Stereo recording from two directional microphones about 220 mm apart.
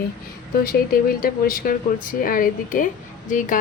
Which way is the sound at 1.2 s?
40° left (ahead or behind).